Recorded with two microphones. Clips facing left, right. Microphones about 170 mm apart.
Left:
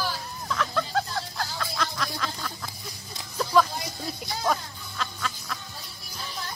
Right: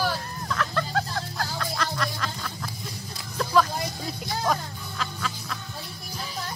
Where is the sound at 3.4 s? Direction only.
Centre (ahead or behind).